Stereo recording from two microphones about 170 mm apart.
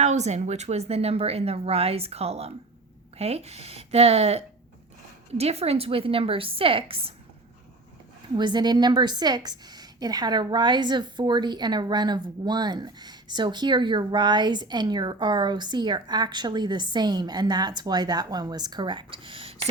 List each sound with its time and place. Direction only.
0.0 s speech: 40° right (ahead or behind)
8.4 s a woman's voice: 25° right (ahead or behind)